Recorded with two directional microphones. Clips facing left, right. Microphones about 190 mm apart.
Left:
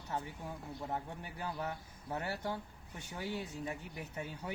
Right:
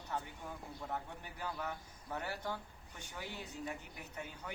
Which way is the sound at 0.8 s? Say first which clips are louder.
Left 3 dB; 25° left (ahead or behind).